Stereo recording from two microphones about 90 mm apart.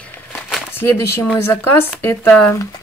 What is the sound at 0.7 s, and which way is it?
Speech, 25° left (ahead or behind).